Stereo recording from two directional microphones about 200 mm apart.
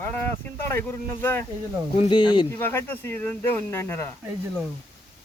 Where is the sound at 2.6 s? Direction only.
10° left (ahead or behind).